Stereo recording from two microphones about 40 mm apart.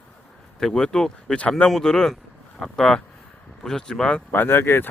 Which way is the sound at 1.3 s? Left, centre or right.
Left.